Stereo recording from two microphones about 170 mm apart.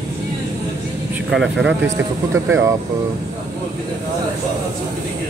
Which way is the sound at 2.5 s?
15° right (ahead or behind).